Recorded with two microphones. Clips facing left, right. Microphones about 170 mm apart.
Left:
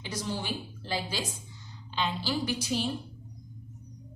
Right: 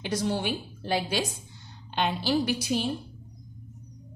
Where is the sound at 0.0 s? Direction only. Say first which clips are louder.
Right 7 dB; 60° right (ahead or behind).